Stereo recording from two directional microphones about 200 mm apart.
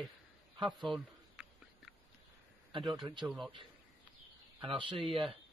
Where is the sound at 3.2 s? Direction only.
Centre (ahead or behind).